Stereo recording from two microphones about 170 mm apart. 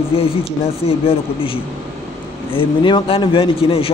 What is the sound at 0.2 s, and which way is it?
A man's voice, 35° left (ahead or behind).